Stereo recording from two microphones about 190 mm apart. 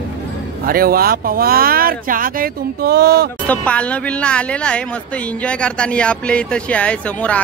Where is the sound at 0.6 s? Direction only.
50° right (ahead or behind).